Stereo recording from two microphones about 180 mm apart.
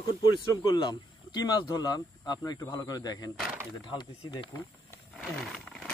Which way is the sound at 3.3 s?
5° right (ahead or behind).